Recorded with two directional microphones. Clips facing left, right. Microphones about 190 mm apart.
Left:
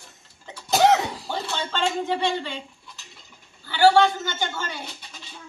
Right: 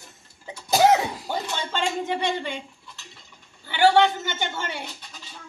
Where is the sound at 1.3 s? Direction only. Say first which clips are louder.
Even; 15° right (ahead or behind).